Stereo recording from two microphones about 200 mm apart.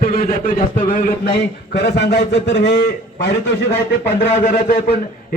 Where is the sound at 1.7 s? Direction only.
55° left (ahead or behind).